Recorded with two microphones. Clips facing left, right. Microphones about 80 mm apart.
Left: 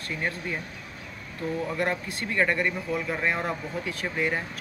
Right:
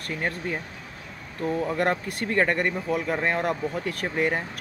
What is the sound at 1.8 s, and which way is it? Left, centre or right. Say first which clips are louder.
Speech: right 3 dB; right.